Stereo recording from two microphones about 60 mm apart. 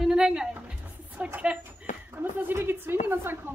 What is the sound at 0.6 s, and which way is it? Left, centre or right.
Music, centre.